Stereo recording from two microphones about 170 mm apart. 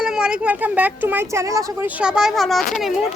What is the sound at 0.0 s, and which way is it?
Speech, 5° right (ahead or behind).